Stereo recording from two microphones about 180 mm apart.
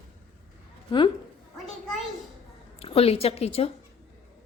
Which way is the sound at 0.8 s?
25° left (ahead or behind).